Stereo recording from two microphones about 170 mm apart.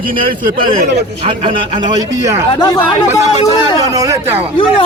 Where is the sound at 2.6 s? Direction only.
25° left (ahead or behind).